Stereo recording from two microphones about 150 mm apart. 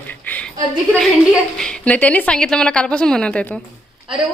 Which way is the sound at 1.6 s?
5° left (ahead or behind).